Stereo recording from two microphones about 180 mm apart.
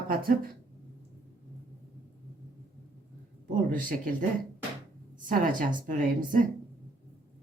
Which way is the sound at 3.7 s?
50° right (ahead or behind).